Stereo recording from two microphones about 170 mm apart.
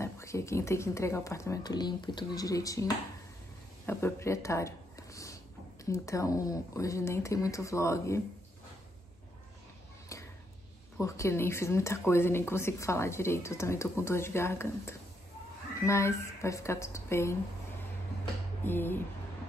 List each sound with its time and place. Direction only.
0.0 s speech: 15° left (ahead or behind)
11.0 s speech: 15° left (ahead or behind)
18.6 s speech: 10° left (ahead or behind)